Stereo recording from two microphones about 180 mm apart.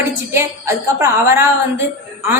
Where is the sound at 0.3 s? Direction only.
15° right (ahead or behind).